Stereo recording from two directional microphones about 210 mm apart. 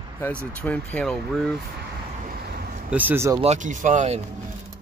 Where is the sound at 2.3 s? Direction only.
45° right (ahead or behind).